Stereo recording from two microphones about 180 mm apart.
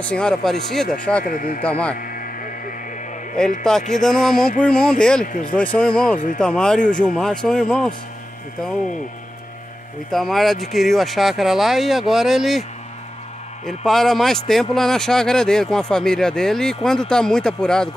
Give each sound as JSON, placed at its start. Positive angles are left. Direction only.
{"t": 0.0, "sound": "speech", "side_deg": 5}
{"t": 1.2, "sound": "speech", "side_deg": 50}
{"t": 2.0, "sound": "a sound", "side_deg": 50}
{"t": 3.9, "sound": "speech", "side_deg": 5}
{"t": 6.1, "sound": "speech", "side_deg": 50}
{"t": 6.4, "sound": "speech", "side_deg": 5}
{"t": 10.1, "sound": "speech", "side_deg": 0}
{"t": 13.7, "sound": "speech", "side_deg": 0}